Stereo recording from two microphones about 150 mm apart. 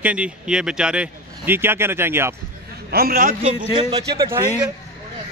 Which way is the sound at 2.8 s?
85° right.